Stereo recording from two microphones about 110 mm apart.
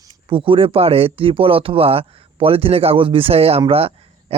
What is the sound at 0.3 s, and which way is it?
A man's voice, 50° right (ahead or behind).